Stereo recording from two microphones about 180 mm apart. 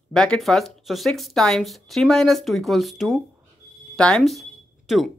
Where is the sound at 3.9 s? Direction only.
5° left (ahead or behind).